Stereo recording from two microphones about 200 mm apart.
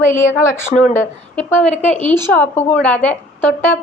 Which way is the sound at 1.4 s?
10° left (ahead or behind).